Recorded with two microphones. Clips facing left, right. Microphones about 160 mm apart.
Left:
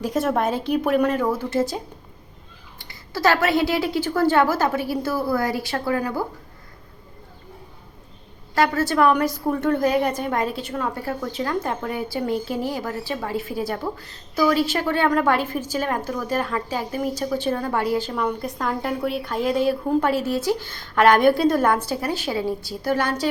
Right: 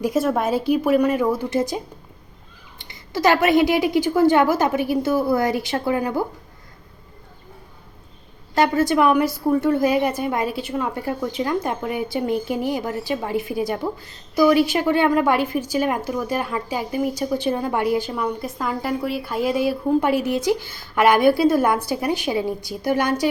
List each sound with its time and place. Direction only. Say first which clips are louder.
0.0 s a woman's voice: right 2 dB; 5° right (ahead or behind); by 6.2 s 20° right (ahead or behind)
8.5 s a woman's voice: right 2 dB; 20° right (ahead or behind)